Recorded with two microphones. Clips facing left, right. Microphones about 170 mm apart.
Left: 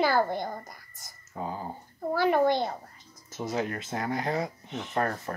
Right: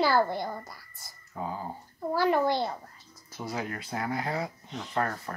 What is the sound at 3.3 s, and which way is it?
Speech, 20° left (ahead or behind).